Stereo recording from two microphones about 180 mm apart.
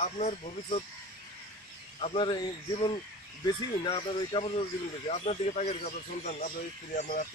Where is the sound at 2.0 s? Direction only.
30° left (ahead or behind); by 7.2 s 45° left (ahead or behind).